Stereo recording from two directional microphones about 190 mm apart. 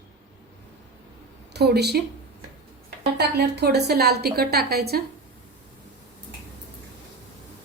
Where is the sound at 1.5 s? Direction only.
60° right (ahead or behind).